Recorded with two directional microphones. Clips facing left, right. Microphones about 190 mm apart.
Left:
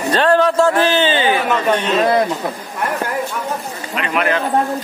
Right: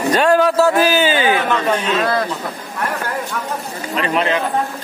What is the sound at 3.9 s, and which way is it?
Speech, 30° right (ahead or behind).